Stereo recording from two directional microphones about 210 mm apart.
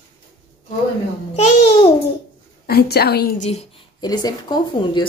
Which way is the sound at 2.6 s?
50° left (ahead or behind).